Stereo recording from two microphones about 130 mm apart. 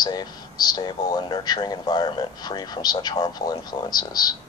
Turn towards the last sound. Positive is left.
turn(degrees=30)  # may be behind; listen again after turning